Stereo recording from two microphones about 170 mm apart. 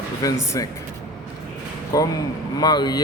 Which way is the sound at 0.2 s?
20° left (ahead or behind).